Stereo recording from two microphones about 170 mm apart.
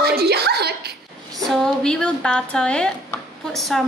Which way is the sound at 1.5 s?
5° left (ahead or behind).